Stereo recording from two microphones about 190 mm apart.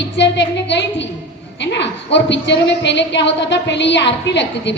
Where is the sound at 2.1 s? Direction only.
65° left (ahead or behind).